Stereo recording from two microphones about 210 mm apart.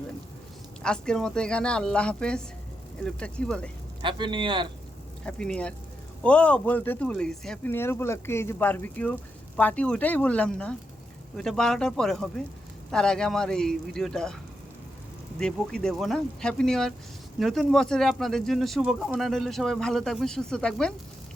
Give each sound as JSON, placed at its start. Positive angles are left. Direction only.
{"t": 0.8, "sound": "speech", "side_deg": 5}
{"t": 4.0, "sound": "speech", "side_deg": -25}
{"t": 5.2, "sound": "speech", "side_deg": 5}
{"t": 15.4, "sound": "speech", "side_deg": 5}